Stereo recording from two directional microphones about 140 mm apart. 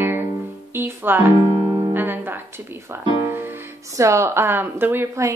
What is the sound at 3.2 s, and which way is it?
Speech, 15° right (ahead or behind).